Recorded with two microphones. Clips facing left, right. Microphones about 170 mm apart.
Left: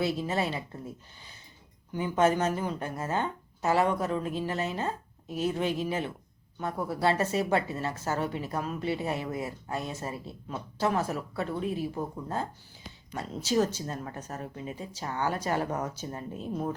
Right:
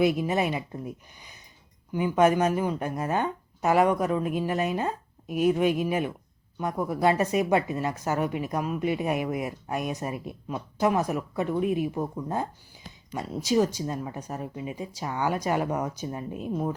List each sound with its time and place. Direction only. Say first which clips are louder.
0.0 s speech: right 5 dB; 15° right (ahead or behind)